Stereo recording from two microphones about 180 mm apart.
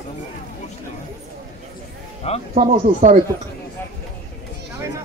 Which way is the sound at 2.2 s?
35° left (ahead or behind).